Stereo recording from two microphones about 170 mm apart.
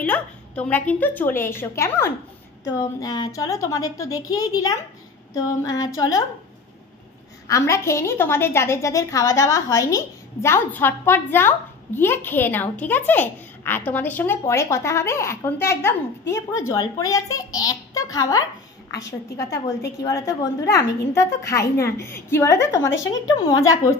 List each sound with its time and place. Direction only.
0.0 s a woman's voice: 10° left (ahead or behind)
7.4 s a woman's voice: 20° left (ahead or behind)